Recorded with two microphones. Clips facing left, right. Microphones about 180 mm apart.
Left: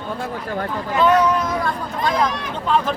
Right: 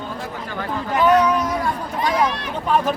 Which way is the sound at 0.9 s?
10° right (ahead or behind).